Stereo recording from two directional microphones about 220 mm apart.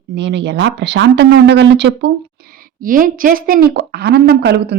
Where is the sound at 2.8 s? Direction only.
40° right (ahead or behind).